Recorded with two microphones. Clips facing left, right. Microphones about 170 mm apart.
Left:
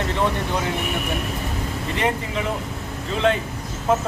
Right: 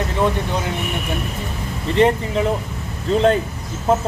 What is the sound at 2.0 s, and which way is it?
Speech, 30° right (ahead or behind).